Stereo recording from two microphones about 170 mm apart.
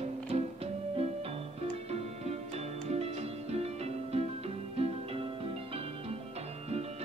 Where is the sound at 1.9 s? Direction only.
40° right (ahead or behind).